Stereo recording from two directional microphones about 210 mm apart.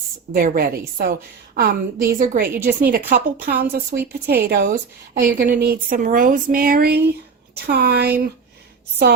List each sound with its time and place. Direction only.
0.3 s a woman's voice: 45° right (ahead or behind)